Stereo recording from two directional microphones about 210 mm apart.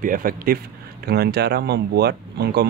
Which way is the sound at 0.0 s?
40° right (ahead or behind).